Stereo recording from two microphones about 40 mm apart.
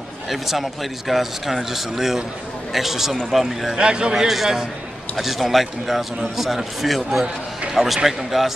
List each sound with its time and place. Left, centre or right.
0.3 s speech: centre
3.7 s a man's voice: right
4.1 s a man's voice: centre